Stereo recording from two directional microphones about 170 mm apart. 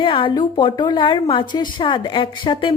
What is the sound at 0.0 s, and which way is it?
A woman's voice, 30° left (ahead or behind).